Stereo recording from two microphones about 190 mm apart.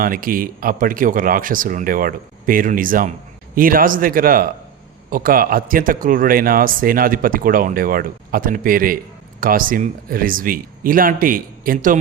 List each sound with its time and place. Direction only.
0.0 s speech: 50° right (ahead or behind)